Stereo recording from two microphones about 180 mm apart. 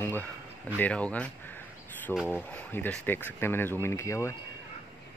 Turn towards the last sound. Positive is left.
turn(degrees=15)  # may be behind; listen again after turning